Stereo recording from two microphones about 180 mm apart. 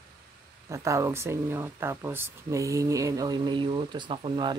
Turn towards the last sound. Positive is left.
turn(degrees=-25)  # may be behind; listen again after turning